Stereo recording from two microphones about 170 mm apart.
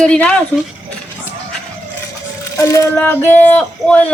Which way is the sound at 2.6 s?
15° left (ahead or behind).